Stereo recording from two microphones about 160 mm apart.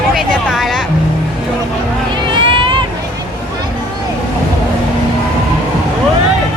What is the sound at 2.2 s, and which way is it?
Vehicle, 30° right (ahead or behind).